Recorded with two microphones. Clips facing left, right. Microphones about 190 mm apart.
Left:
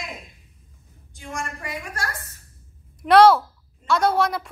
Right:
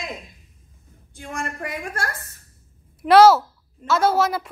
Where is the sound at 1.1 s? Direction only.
55° right (ahead or behind).